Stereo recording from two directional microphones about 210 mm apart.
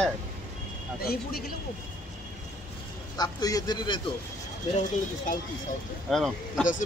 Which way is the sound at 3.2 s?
15° left (ahead or behind).